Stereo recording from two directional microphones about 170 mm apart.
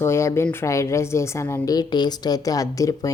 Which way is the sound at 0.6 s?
15° left (ahead or behind).